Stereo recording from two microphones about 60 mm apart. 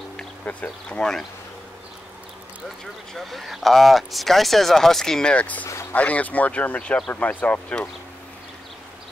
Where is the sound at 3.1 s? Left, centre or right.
Centre; by 7.8 s left.